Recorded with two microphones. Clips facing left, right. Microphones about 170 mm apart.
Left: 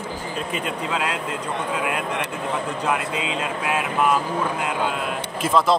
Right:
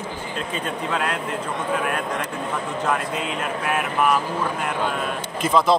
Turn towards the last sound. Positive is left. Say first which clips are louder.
# right 1 dB
turn(degrees=5)  # may be behind; listen again after turning